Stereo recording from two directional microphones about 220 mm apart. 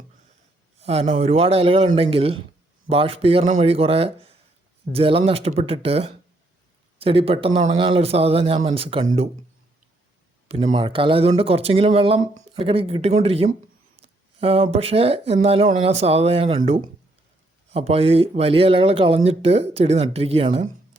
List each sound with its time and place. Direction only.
0.8 s speech: 30° right (ahead or behind)
10.5 s speech: 30° right (ahead or behind)